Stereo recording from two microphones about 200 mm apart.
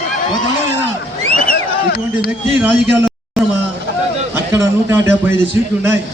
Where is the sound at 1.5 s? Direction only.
50° left (ahead or behind).